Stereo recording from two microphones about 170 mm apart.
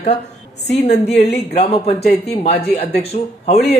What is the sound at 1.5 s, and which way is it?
Speech, 40° left (ahead or behind).